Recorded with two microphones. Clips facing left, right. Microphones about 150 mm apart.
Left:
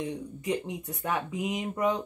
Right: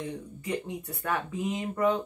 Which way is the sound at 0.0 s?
20° left (ahead or behind).